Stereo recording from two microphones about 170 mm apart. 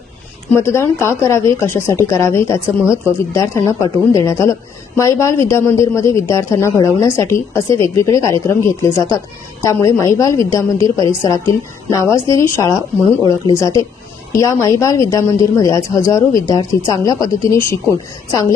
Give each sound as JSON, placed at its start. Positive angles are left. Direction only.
{"t": 0.5, "sound": "speech", "side_deg": 15}